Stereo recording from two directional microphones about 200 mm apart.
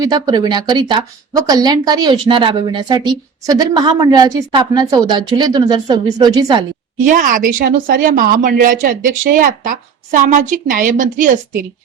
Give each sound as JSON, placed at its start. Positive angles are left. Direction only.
{"t": 0.0, "sound": "a woman's voice", "side_deg": -20}
{"t": 7.0, "sound": "a woman's voice", "side_deg": -40}